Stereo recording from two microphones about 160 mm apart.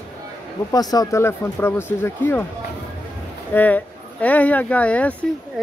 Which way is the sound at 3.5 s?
10° left (ahead or behind).